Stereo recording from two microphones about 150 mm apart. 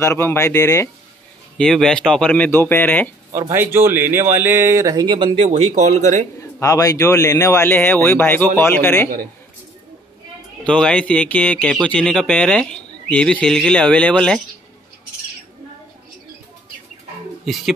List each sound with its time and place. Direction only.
0.0 s speech: 15° left (ahead or behind)
1.6 s speech: 5° left (ahead or behind)
3.3 s speech: 15° right (ahead or behind); by 5.5 s 35° right (ahead or behind)
5.5 s speech: 50° right (ahead or behind)
6.6 s speech: 25° left (ahead or behind)
10.6 s speech: 5° left (ahead or behind)